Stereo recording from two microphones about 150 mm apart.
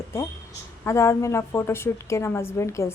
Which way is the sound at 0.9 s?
20° left (ahead or behind).